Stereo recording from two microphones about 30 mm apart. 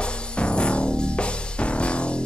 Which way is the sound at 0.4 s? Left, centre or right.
Left.